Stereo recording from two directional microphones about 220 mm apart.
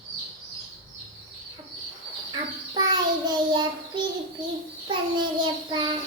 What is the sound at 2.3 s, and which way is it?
Child singing, 20° right (ahead or behind).